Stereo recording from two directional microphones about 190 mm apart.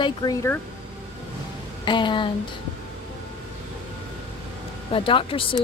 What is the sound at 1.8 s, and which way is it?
Speech, 25° left (ahead or behind).